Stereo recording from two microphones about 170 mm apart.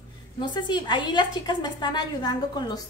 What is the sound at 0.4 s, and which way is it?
A woman's voice, 25° left (ahead or behind).